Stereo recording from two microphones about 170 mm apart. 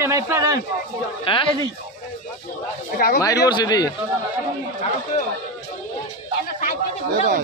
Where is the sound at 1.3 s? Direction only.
30° left (ahead or behind).